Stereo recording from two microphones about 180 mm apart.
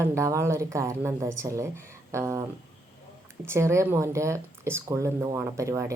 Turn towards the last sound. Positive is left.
turn(degrees=-15)  # may be behind; listen again after turning